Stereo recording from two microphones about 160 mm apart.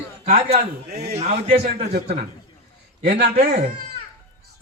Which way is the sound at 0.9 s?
85° right.